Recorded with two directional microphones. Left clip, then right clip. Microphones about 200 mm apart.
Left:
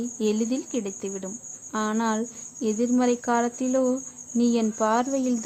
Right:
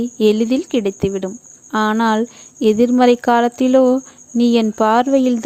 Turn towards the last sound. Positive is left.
turn(degrees=-40)  # may be behind; listen again after turning